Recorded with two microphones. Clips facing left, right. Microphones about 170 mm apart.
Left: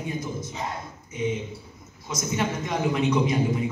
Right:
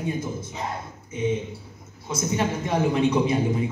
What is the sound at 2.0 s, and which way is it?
A man's voice, 30° right (ahead or behind).